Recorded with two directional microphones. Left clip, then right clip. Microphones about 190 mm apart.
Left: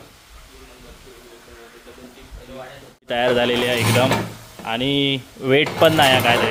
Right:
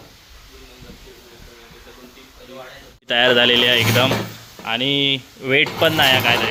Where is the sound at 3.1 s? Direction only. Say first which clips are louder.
Right 4 dB; centre (ahead or behind).